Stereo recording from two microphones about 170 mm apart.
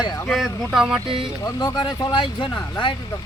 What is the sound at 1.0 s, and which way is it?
Speech, 30° right (ahead or behind).